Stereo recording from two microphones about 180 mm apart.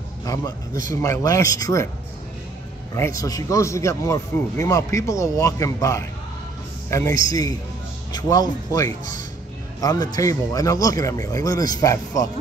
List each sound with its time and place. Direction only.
0.2 s a man's voice: 20° left (ahead or behind)
3.2 s speech: 20° left (ahead or behind)